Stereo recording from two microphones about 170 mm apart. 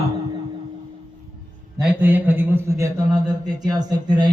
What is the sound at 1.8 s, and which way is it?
A man's voice, 10° right (ahead or behind).